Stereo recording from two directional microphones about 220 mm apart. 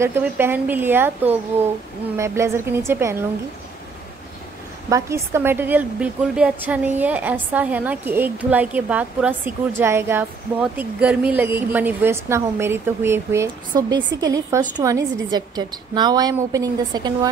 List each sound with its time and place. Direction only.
0.0 s a woman's voice: 10° right (ahead or behind)
4.8 s a woman's voice: 15° right (ahead or behind)